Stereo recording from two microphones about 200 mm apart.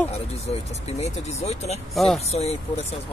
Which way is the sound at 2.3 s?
30° left (ahead or behind).